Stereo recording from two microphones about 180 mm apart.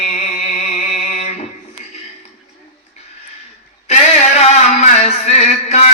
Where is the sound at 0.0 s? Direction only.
35° left (ahead or behind).